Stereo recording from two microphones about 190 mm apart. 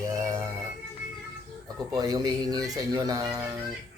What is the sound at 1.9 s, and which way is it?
Speech, 20° right (ahead or behind).